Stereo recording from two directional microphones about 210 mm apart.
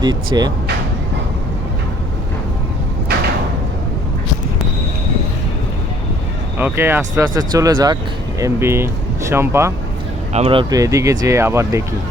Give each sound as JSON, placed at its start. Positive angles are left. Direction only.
{"t": 0.0, "sound": "speech", "side_deg": -20}
{"t": 6.6, "sound": "speech", "side_deg": -10}
{"t": 10.3, "sound": "speech", "side_deg": -30}